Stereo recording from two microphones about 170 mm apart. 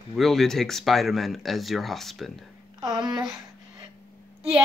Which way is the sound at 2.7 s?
25° right (ahead or behind).